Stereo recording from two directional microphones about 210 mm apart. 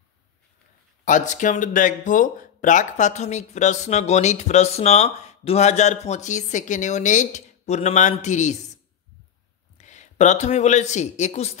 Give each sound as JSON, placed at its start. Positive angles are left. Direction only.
{"t": 1.0, "sound": "speech", "side_deg": 35}
{"t": 9.8, "sound": "speech", "side_deg": 35}